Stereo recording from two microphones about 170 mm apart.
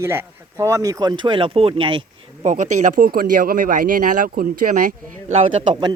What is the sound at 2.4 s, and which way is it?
Speech, 45° right (ahead or behind).